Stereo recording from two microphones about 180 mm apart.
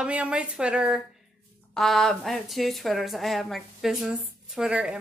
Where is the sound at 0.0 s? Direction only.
5° right (ahead or behind).